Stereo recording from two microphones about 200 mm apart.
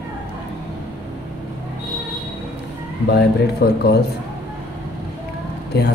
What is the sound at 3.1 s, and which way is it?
Speech, 55° left (ahead or behind).